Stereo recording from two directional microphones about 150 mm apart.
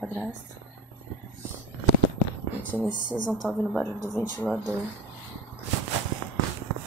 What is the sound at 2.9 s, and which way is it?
Speech, 30° right (ahead or behind).